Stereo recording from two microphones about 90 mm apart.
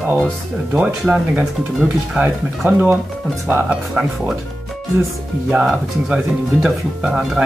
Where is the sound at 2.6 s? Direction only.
20° right (ahead or behind).